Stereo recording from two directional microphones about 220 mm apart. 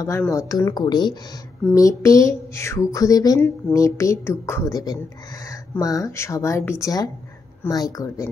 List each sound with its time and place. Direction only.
0.0 s speech: 15° left (ahead or behind)